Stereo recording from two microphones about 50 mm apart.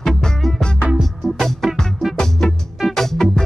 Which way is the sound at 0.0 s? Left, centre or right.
Centre.